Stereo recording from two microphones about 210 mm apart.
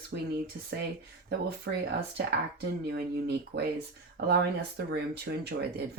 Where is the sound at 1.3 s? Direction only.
50° right (ahead or behind).